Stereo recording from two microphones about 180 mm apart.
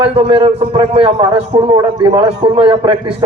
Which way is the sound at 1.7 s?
20° right (ahead or behind).